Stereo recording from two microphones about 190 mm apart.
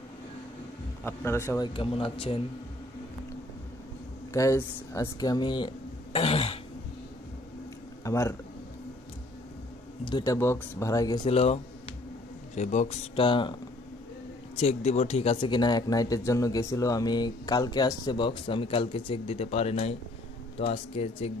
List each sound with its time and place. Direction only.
1.0 s speech: 15° left (ahead or behind)
1.7 s speech: 30° left (ahead or behind)
4.3 s speech: 15° left (ahead or behind)
6.1 s throat clearing: 30° left (ahead or behind)
8.0 s speech: 15° left (ahead or behind)
10.0 s speech: 20° left (ahead or behind)
11.2 s speech: 35° left (ahead or behind)
14.6 s speech: 35° left (ahead or behind)